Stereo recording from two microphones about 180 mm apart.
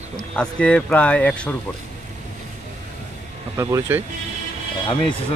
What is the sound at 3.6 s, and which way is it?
Speech, 15° right (ahead or behind).